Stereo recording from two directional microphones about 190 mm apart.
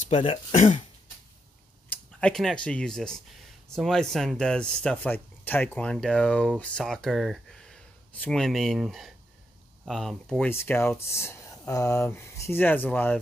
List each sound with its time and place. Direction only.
0.1 s speech: 30° left (ahead or behind)
1.9 s speech: 5° left (ahead or behind)